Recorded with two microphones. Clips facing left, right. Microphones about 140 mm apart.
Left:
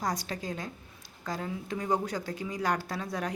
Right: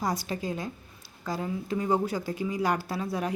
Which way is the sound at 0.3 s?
10° right (ahead or behind).